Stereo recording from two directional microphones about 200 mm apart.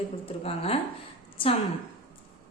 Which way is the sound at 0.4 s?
30° left (ahead or behind).